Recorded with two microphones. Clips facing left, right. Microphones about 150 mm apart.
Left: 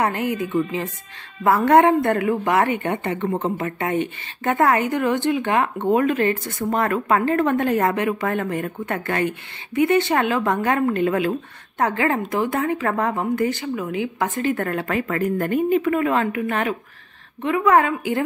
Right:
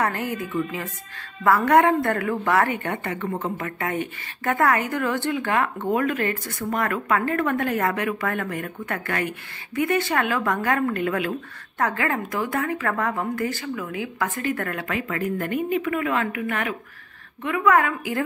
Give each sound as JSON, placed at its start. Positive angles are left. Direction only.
{"t": 0.0, "sound": "a woman's voice", "side_deg": 20}